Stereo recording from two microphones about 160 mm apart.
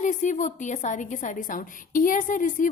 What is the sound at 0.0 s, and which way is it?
A woman's voice, 50° left (ahead or behind).